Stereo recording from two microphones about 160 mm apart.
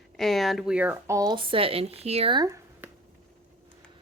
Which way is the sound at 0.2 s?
Centre (ahead or behind).